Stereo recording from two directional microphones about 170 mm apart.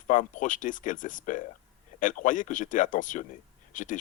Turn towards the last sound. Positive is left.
turn(degrees=50)  # may be behind; listen again after turning